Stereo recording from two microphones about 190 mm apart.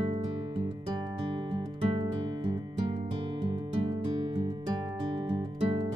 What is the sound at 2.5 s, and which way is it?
Music, 25° right (ahead or behind).